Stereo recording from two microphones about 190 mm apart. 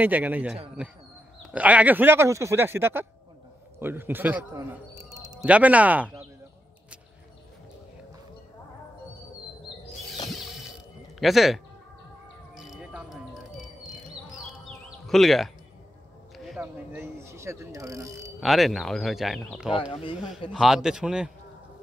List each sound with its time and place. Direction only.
0.0 s a man's voice: 10° right (ahead or behind)
5.4 s speech: 5° right (ahead or behind)
10.3 s ratchet: centre (ahead or behind)
11.1 s speech: centre (ahead or behind)
12.5 s music: 5° right (ahead or behind)
14.7 s music: centre (ahead or behind)
16.3 s ratchet: centre (ahead or behind)
18.4 s speech: centre (ahead or behind)
19.9 s speech: 30° left (ahead or behind)
20.5 s speech: centre (ahead or behind)